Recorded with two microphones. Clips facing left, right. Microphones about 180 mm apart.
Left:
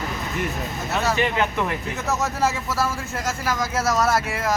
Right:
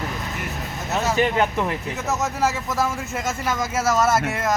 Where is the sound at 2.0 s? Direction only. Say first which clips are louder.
Even; 20° right (ahead or behind).